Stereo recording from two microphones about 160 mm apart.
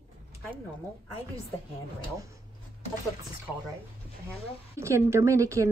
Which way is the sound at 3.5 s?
5° left (ahead or behind).